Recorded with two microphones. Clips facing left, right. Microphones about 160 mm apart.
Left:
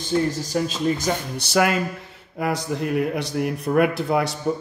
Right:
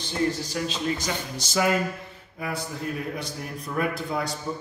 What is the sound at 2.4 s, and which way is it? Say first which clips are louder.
A man's voice: left 7 dB; 75° left (ahead or behind).